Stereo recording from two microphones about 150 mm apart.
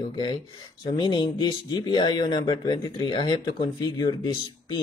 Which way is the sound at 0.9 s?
30° left (ahead or behind).